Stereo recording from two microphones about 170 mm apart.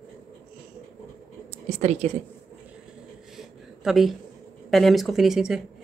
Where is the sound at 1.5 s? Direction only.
40° right (ahead or behind).